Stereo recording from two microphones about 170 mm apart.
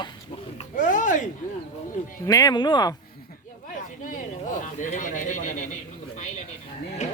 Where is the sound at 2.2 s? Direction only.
20° left (ahead or behind).